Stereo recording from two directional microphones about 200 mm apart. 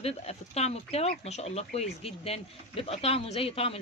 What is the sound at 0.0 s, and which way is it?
Speech, 30° left (ahead or behind).